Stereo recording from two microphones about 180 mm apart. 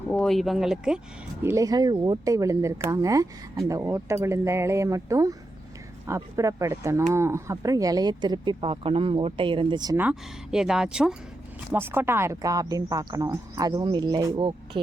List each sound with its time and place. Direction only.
0.1 s speech: 5° left (ahead or behind)
1.4 s speech: 15° right (ahead or behind)
10.0 s speech: 5° right (ahead or behind); by 14.8 s 25° right (ahead or behind)